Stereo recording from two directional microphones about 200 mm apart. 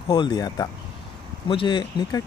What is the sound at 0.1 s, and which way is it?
Speech, 20° left (ahead or behind).